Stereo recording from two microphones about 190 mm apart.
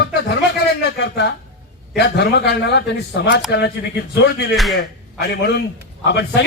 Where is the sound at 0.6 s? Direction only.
60° left (ahead or behind).